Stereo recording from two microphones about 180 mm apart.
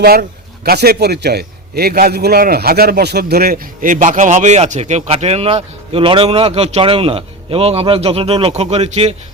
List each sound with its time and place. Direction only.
0.0 s a man's voice: 60° right (ahead or behind); by 9.1 s 35° right (ahead or behind)